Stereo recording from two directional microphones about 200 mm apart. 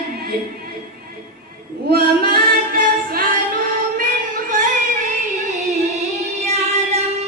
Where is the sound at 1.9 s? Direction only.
45° right (ahead or behind).